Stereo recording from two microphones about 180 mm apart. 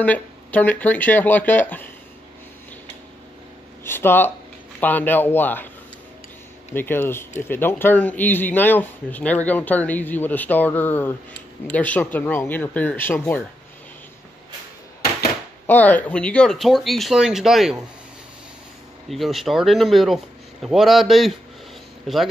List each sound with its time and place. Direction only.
0.0 s speech: 10° left (ahead or behind)
3.8 s speech: 10° left (ahead or behind)
6.7 s speech: 10° left (ahead or behind)
15.6 s speech: 10° left (ahead or behind)
19.0 s speech: centre (ahead or behind)